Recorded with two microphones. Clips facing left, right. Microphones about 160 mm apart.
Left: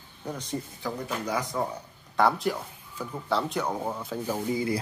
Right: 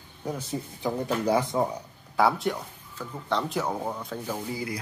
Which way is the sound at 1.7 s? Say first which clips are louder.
Right 2 dB; 5° right (ahead or behind).